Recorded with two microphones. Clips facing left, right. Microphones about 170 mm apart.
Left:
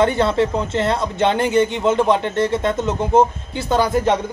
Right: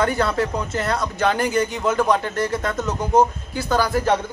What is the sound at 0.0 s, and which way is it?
Speech, 25° left (ahead or behind).